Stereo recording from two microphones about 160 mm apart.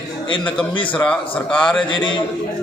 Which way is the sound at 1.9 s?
30° left (ahead or behind).